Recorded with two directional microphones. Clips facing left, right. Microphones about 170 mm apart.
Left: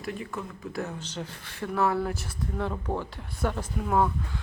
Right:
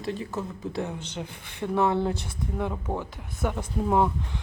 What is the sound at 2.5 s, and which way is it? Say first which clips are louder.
Speech: even; 10° right (ahead or behind).